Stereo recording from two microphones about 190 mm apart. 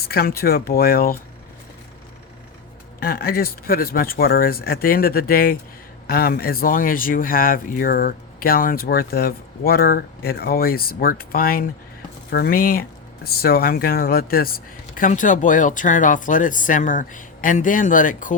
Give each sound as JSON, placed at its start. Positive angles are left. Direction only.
{"t": 0.0, "sound": "speech", "side_deg": 55}
{"t": 3.0, "sound": "speech", "side_deg": 50}